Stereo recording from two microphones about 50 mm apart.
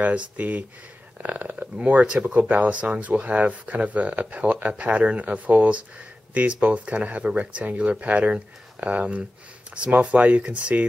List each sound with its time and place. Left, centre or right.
0.0 s speech: right